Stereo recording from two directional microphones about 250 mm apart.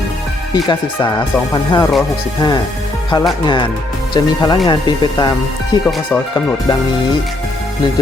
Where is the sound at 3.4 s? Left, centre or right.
Centre.